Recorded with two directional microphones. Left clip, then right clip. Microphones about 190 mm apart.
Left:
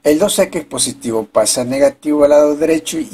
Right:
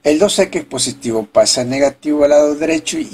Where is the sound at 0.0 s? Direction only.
20° left (ahead or behind).